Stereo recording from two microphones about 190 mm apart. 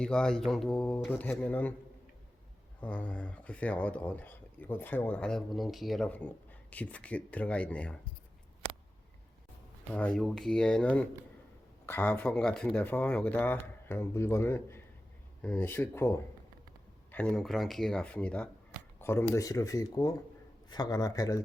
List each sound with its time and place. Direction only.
0.0 s speech: 5° left (ahead or behind)
2.8 s speech: 5° left (ahead or behind)
9.9 s speech: 5° left (ahead or behind)